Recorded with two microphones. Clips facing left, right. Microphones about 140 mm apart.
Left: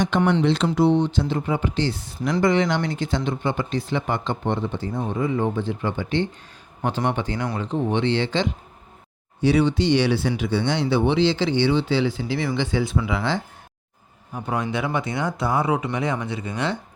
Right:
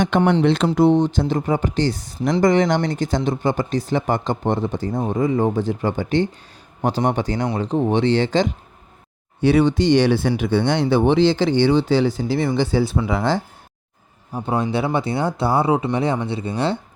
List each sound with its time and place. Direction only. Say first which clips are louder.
0.1 s speech: right 4 dB; 55° right (ahead or behind)
9.4 s speech: right 3 dB; 50° right (ahead or behind)
14.3 s speech: right 4 dB; 30° right (ahead or behind)